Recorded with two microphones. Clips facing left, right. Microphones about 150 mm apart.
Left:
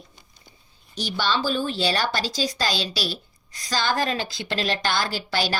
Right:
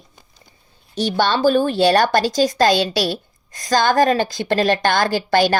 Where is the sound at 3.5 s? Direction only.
50° right (ahead or behind).